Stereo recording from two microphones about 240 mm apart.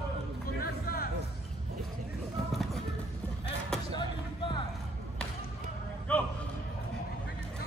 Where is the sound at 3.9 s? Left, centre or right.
Centre.